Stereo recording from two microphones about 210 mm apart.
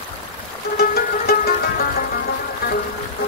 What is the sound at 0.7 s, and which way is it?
Music, 45° left (ahead or behind).